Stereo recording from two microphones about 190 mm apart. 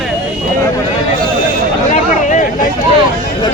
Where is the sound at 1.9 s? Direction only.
40° left (ahead or behind).